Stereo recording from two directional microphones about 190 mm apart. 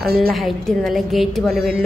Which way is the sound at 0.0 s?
55° right (ahead or behind).